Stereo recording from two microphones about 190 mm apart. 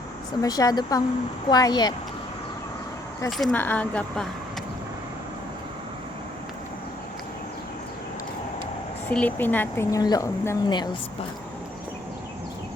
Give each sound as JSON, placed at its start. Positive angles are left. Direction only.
{"t": 0.4, "sound": "a woman's voice", "side_deg": 20}
{"t": 3.2, "sound": "speech", "side_deg": 0}
{"t": 9.0, "sound": "speech", "side_deg": 10}